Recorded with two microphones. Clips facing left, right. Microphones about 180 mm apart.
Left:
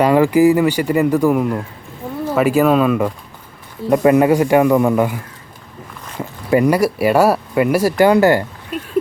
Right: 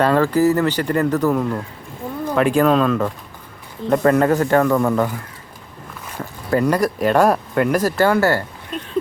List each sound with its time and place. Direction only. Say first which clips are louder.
0.0 s speech: left 4 dB; 15° left (ahead or behind)
6.1 s speech: left 4 dB; 10° left (ahead or behind)